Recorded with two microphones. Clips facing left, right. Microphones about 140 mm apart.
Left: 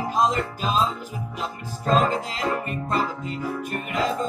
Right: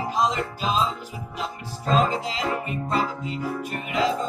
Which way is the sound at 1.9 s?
45° left (ahead or behind).